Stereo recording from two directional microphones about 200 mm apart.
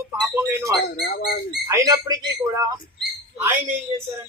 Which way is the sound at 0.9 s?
50° left (ahead or behind).